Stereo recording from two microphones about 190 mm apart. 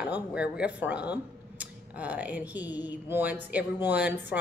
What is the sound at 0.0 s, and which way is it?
A woman's voice, 5° right (ahead or behind).